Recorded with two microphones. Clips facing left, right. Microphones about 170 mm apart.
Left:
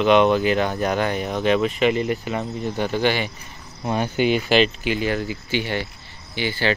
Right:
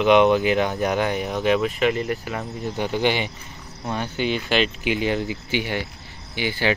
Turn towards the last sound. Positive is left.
turn(degrees=-15)  # may be behind; listen again after turning